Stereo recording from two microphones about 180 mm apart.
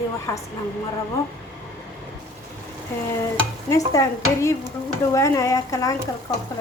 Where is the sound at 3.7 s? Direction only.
15° left (ahead or behind).